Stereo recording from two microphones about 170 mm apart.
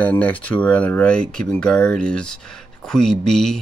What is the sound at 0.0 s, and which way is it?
Speech, 10° left (ahead or behind).